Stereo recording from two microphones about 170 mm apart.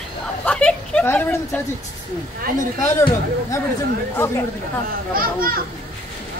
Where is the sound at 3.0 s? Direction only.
15° left (ahead or behind).